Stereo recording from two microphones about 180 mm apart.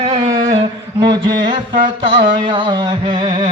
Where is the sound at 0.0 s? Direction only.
35° right (ahead or behind).